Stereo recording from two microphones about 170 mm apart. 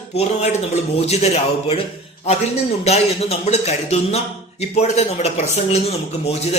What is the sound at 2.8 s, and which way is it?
A man's voice, 35° left (ahead or behind).